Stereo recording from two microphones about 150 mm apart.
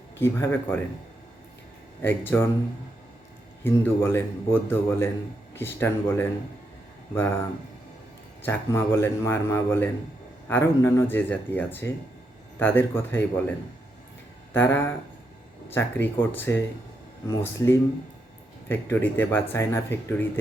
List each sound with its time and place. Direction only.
0.2 s speech: 15° left (ahead or behind)
2.0 s speech: 15° left (ahead or behind)
3.6 s speech: 15° left (ahead or behind)
8.4 s speech: 15° left (ahead or behind)
14.5 s speech: 15° left (ahead or behind)